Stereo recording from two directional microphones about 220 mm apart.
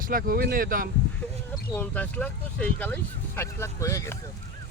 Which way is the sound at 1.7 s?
10° left (ahead or behind).